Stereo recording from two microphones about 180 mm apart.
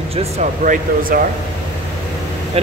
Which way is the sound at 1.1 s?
50° right (ahead or behind).